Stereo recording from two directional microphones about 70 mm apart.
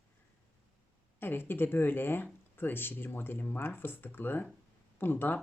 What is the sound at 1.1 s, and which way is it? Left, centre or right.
Speech, left.